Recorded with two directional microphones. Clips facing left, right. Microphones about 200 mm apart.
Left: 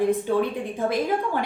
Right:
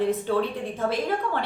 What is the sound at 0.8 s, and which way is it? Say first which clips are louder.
Speech: left 2 dB; 15° left (ahead or behind).